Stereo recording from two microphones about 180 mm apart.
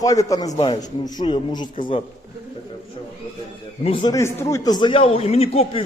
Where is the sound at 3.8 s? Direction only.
30° left (ahead or behind).